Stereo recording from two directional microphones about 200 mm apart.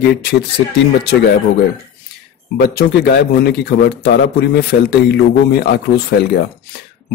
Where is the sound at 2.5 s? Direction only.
55° left (ahead or behind).